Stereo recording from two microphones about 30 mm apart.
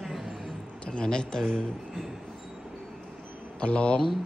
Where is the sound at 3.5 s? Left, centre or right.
Left.